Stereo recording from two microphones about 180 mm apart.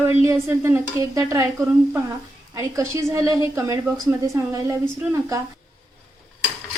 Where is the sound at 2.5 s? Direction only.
15° right (ahead or behind).